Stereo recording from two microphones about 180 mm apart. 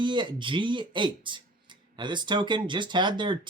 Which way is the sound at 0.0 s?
25° right (ahead or behind).